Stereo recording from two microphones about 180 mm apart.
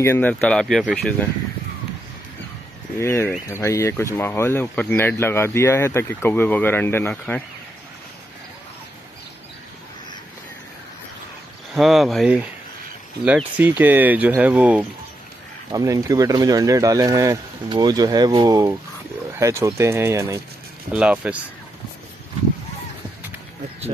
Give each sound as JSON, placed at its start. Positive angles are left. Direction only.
{"t": 0.0, "sound": "speech", "side_deg": 10}
{"t": 3.0, "sound": "speech", "side_deg": 15}
{"t": 11.7, "sound": "speech", "side_deg": 0}
{"t": 13.6, "sound": "speech", "side_deg": -10}